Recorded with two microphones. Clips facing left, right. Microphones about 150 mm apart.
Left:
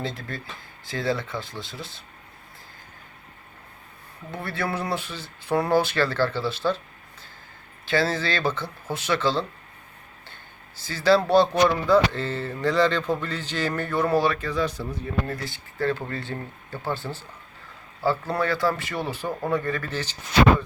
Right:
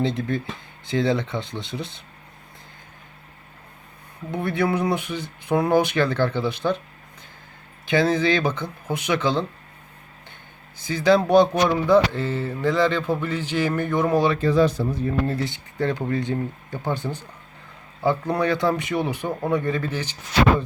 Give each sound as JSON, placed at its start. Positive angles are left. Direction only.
{"t": 0.0, "sound": "speech", "side_deg": -20}
{"t": 4.3, "sound": "speech", "side_deg": -20}
{"t": 10.8, "sound": "speech", "side_deg": -15}
{"t": 14.3, "sound": "speech", "side_deg": -30}